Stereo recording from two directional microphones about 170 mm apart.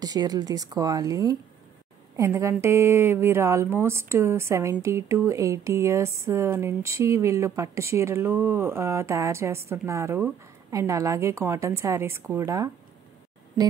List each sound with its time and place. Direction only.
0.0 s a woman's voice: 20° right (ahead or behind)